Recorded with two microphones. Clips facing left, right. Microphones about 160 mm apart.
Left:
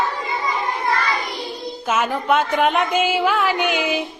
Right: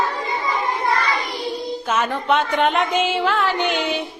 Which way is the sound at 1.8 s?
5° left (ahead or behind).